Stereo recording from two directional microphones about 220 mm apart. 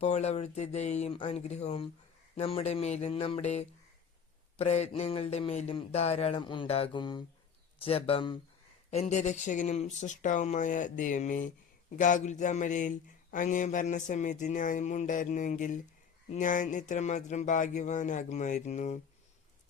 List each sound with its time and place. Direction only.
0.0 s speech: 30° left (ahead or behind)